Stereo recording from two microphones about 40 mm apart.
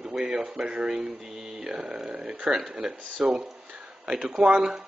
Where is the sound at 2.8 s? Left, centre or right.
Centre.